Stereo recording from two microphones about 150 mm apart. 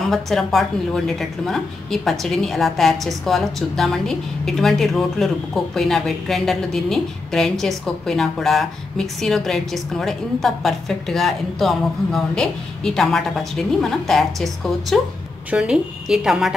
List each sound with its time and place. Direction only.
0.1 s a woman's voice: centre (ahead or behind)